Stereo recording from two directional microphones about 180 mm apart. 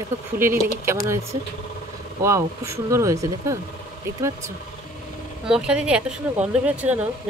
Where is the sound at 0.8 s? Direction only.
15° right (ahead or behind).